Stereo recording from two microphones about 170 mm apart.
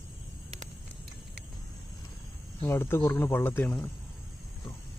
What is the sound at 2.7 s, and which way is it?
Speech, 15° left (ahead or behind).